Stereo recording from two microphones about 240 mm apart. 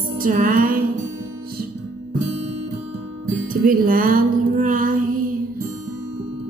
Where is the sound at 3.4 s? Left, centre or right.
Right.